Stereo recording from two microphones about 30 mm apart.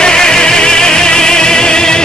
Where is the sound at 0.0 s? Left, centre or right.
Left.